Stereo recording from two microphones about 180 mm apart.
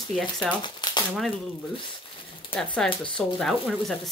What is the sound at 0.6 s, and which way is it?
Shuffling cards, 25° left (ahead or behind).